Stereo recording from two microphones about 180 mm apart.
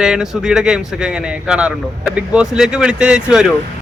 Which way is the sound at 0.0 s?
5° right (ahead or behind).